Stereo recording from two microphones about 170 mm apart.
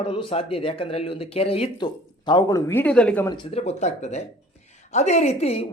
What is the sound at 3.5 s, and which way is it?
A man's voice, 35° left (ahead or behind).